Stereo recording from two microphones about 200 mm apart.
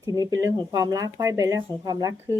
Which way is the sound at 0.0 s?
15° right (ahead or behind).